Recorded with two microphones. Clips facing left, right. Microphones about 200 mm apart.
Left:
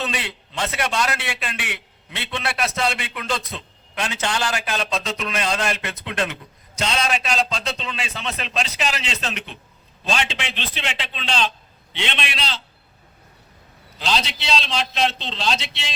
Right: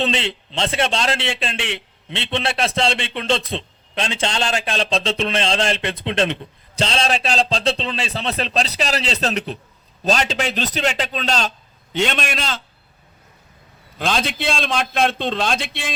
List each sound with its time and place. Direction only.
0.0 s a man's voice: 25° right (ahead or behind); by 12.6 s 45° right (ahead or behind)
14.0 s a man's voice: 50° right (ahead or behind)